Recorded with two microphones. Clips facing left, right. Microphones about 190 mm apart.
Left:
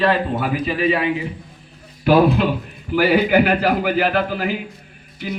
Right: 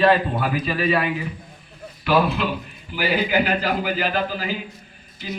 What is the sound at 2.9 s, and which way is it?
A man's voice, 60° left (ahead or behind).